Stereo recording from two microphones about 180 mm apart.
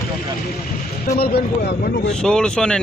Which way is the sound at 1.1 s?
60° left (ahead or behind).